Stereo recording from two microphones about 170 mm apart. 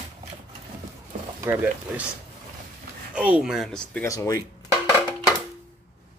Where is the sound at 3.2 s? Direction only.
5° right (ahead or behind).